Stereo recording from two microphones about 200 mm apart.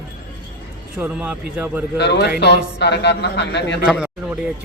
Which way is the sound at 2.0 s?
55° left (ahead or behind).